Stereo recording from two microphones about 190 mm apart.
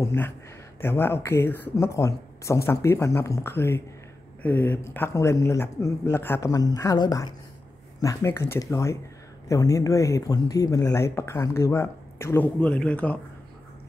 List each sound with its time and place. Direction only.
0.0 s speech: 10° left (ahead or behind)